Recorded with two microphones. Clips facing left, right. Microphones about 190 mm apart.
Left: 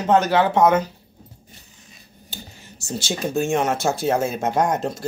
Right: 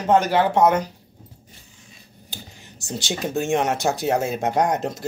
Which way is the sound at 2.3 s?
15° right (ahead or behind).